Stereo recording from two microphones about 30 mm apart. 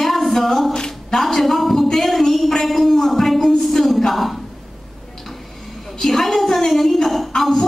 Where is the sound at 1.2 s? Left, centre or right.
Centre.